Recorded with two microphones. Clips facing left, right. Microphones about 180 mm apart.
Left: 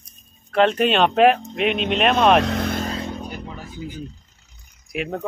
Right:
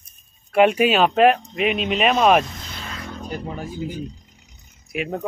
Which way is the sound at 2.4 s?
70° left (ahead or behind).